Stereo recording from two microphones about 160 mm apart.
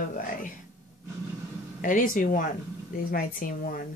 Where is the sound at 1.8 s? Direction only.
55° left (ahead or behind).